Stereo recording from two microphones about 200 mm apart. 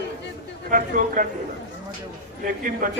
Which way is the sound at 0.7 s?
45° right (ahead or behind).